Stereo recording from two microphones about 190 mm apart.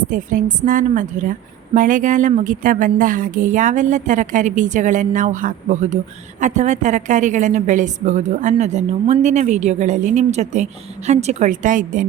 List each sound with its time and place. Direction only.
0.1 s a woman's voice: 45° right (ahead or behind)